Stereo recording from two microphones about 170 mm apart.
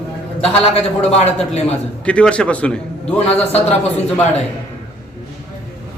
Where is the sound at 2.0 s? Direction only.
5° left (ahead or behind).